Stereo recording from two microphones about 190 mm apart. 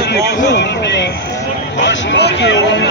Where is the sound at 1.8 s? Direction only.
75° left (ahead or behind).